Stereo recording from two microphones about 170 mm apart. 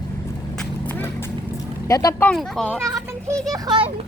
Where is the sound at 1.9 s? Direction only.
20° left (ahead or behind).